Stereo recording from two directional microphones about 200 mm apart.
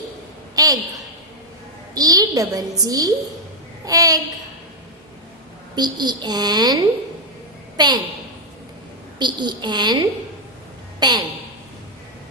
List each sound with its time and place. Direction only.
0.5 s a sound: 20° right (ahead or behind)
2.0 s a woman's voice: 20° right (ahead or behind)
5.7 s a woman's voice: 20° right (ahead or behind)
9.1 s a woman's voice: 20° right (ahead or behind)